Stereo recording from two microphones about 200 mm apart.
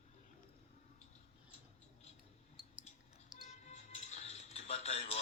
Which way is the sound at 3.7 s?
35° left (ahead or behind).